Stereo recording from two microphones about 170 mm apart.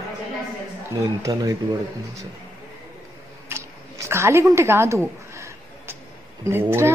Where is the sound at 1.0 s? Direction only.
20° right (ahead or behind).